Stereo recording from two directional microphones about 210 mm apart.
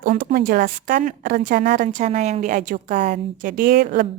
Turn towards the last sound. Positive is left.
turn(degrees=-50)  # may be behind; listen again after turning